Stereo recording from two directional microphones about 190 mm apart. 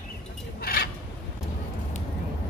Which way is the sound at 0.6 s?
55° left (ahead or behind).